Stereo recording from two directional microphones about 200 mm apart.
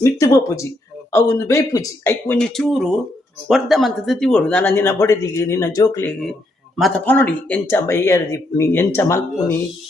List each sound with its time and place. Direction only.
0.0 s speech: 15° left (ahead or behind)